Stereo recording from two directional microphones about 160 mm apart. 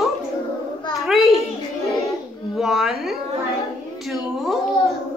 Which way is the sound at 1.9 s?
20° left (ahead or behind).